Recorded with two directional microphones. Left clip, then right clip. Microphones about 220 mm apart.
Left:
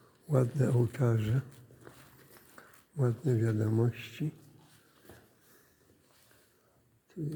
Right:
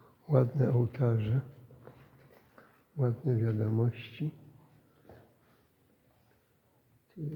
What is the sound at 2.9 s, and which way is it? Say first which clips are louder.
A man's voice: left 1 dB; 10° left (ahead or behind).